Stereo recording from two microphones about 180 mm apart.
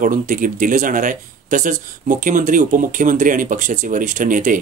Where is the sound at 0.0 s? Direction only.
45° right (ahead or behind).